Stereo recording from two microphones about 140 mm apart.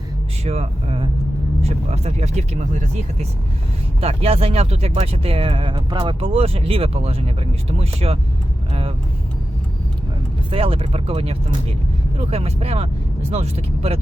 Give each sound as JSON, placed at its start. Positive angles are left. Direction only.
{"t": 0.4, "sound": "speech", "side_deg": -50}
{"t": 10.5, "sound": "speech", "side_deg": -40}